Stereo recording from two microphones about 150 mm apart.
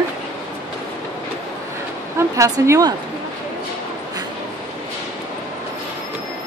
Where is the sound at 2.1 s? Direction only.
20° right (ahead or behind).